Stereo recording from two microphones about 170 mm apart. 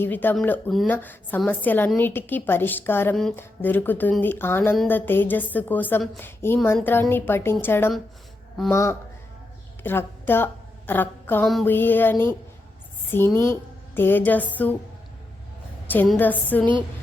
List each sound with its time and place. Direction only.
0.0 s a woman's voice: 10° left (ahead or behind)
16.1 s a woman's voice: 10° left (ahead or behind)